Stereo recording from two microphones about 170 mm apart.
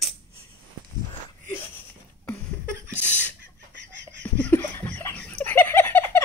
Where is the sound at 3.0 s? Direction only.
10° right (ahead or behind).